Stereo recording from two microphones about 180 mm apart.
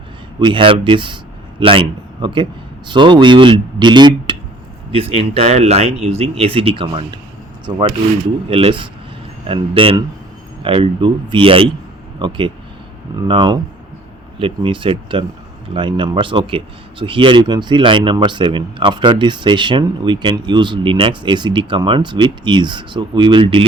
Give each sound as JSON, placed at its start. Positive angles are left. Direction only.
{"t": 0.3, "sound": "a man's voice", "side_deg": -25}